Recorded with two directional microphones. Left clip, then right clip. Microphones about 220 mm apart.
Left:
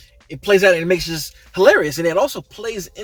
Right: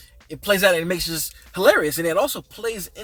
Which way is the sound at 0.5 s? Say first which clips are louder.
Left 5 dB; 15° right (ahead or behind).